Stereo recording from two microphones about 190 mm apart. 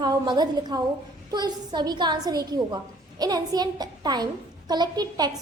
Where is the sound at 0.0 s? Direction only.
20° right (ahead or behind).